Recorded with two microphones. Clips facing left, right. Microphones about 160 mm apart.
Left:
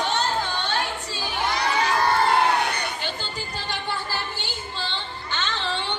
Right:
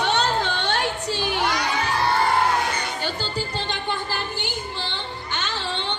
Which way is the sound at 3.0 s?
35° right (ahead or behind).